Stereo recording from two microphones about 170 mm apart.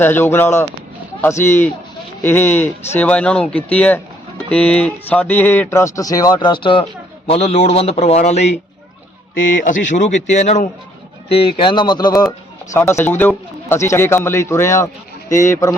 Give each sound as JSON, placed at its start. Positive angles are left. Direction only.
{"t": 0.0, "sound": "a man's voice", "side_deg": 10}
{"t": 9.5, "sound": "a man's voice", "side_deg": 50}